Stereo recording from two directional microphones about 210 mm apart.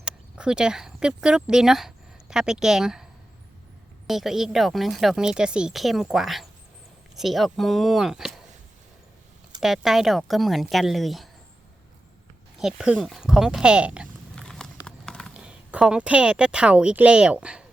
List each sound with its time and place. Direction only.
0.0 s speech: 5° right (ahead or behind)
9.6 s speech: centre (ahead or behind)
12.5 s speech: 5° right (ahead or behind)